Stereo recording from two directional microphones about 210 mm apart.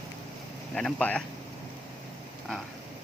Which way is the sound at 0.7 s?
5° left (ahead or behind).